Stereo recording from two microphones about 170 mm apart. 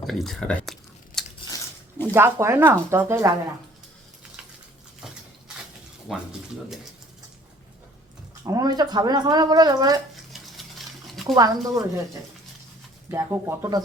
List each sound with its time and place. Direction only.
0.0 s a sound: centre (ahead or behind)
2.1 s speech: 15° right (ahead or behind)
6.1 s speech: centre (ahead or behind)
8.4 s speech: 20° right (ahead or behind)
10.3 s a sound: centre (ahead or behind)
11.3 s speech: 20° right (ahead or behind)
13.1 s speech: 15° right (ahead or behind)